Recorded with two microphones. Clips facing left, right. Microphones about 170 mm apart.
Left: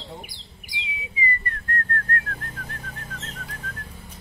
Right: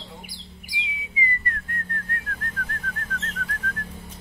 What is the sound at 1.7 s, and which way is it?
Whistling, 10° right (ahead or behind).